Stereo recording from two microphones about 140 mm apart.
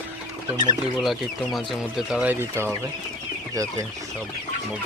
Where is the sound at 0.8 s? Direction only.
Centre (ahead or behind).